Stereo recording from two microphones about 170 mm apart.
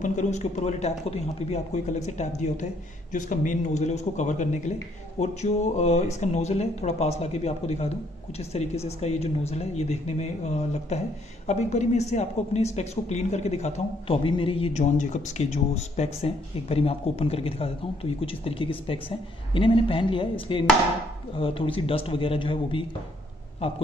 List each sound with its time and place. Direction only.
0.0 s a man's voice: 45° left (ahead or behind)